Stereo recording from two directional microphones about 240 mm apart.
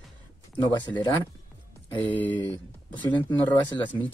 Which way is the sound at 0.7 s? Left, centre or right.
Centre.